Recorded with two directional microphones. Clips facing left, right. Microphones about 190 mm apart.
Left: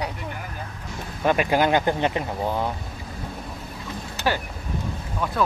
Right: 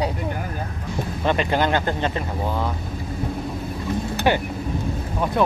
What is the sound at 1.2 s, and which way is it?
Speech, 10° left (ahead or behind).